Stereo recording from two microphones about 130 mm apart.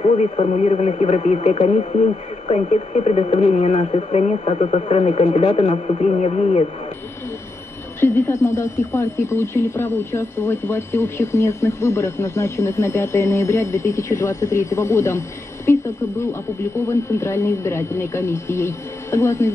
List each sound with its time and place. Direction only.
0.0 s speech: 65° left (ahead or behind)
4.8 s speech: 50° left (ahead or behind)
8.0 s speech: 20° left (ahead or behind)